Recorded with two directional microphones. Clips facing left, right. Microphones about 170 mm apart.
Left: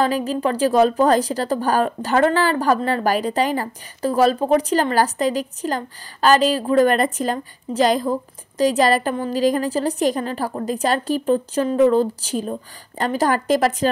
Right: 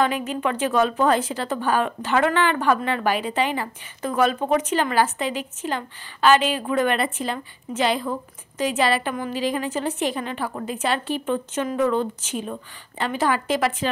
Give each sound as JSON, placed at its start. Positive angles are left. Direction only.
{"t": 0.0, "sound": "a woman's voice", "side_deg": 35}